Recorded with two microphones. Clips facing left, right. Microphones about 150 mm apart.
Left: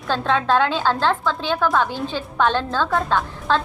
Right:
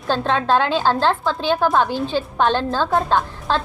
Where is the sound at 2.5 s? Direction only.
40° right (ahead or behind).